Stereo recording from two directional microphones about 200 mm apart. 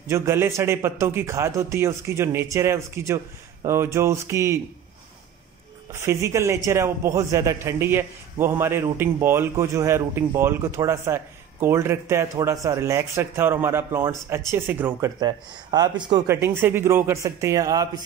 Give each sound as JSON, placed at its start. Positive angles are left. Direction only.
{"t": 0.1, "sound": "a man's voice", "side_deg": -15}
{"t": 5.9, "sound": "a man's voice", "side_deg": -15}
{"t": 15.1, "sound": "a man's voice", "side_deg": -20}